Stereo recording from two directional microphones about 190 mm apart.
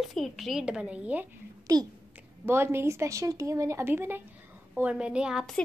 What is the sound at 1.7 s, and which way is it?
A woman's voice, 20° right (ahead or behind).